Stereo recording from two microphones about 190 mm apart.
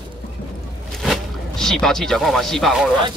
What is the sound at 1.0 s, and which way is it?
Speech, centre (ahead or behind).